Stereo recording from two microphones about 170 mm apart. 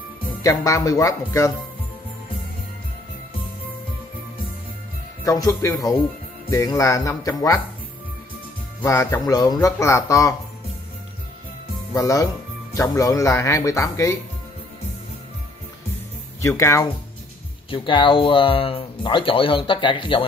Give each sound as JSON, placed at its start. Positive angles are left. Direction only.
{"t": 0.4, "sound": "speech", "side_deg": 20}
{"t": 5.2, "sound": "speech", "side_deg": 20}
{"t": 8.8, "sound": "speech", "side_deg": 15}
{"t": 11.9, "sound": "speech", "side_deg": 20}
{"t": 16.4, "sound": "speech", "side_deg": 20}
{"t": 17.6, "sound": "speech", "side_deg": 30}